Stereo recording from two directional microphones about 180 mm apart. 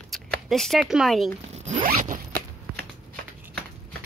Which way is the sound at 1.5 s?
40° right (ahead or behind).